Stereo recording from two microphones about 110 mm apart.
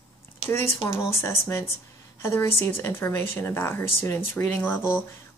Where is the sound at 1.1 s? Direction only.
25° left (ahead or behind).